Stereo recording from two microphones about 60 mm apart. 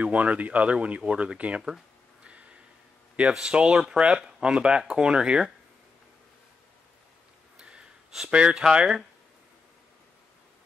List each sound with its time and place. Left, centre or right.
0.0 s speech: right
3.2 s speech: centre
7.5 s gasp: centre
8.3 s speech: centre